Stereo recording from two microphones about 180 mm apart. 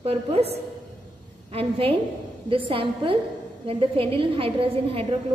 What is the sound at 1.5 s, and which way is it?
A woman's voice, 30° right (ahead or behind).